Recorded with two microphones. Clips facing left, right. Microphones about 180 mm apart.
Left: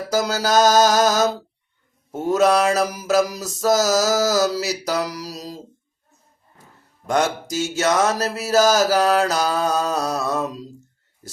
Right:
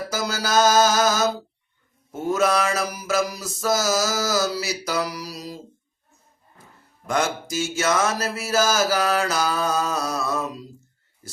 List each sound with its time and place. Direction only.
0.1 s mantra: 40° left (ahead or behind)
7.1 s mantra: 40° left (ahead or behind)